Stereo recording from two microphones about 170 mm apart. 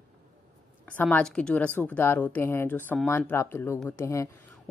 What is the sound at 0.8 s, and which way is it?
A woman's voice, 10° left (ahead or behind).